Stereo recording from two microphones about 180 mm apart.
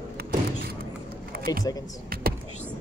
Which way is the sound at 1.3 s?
55° right (ahead or behind).